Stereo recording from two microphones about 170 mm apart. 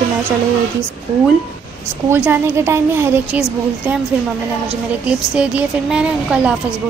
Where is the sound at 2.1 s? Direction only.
15° right (ahead or behind).